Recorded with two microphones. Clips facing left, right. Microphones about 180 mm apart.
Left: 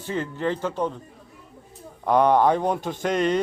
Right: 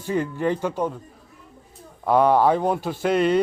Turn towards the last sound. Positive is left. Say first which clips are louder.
# right 3 dB
turn(degrees=-10)  # may be behind; listen again after turning